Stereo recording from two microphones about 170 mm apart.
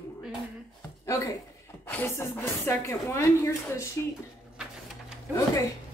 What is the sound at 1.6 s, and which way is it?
Speech, 15° left (ahead or behind).